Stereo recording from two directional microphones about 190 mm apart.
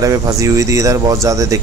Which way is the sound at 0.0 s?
15° right (ahead or behind).